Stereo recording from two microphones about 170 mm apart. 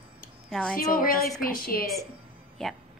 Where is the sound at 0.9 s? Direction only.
55° left (ahead or behind).